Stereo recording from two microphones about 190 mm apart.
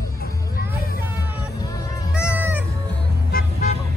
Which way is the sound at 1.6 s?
20° left (ahead or behind).